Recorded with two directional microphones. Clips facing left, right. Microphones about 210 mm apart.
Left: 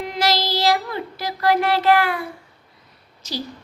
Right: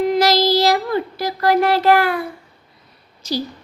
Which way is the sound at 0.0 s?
40° right (ahead or behind).